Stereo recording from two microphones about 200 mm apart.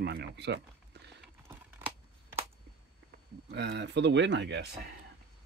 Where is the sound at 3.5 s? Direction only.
60° right (ahead or behind).